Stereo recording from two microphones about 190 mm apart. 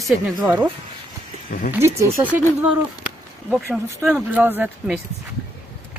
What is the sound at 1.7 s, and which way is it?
Speech, 15° right (ahead or behind).